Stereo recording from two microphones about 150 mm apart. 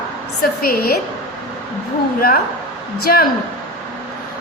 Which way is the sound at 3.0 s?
90° left.